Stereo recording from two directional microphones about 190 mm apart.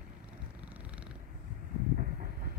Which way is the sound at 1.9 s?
50° right (ahead or behind).